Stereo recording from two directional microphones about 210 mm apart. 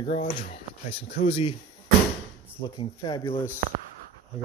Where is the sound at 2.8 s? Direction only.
20° left (ahead or behind).